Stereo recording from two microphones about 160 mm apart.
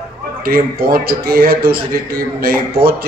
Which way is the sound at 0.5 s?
70° right (ahead or behind).